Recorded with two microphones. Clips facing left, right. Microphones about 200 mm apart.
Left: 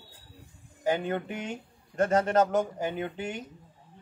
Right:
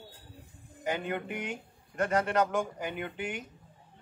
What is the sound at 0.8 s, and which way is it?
Speech, 35° left (ahead or behind).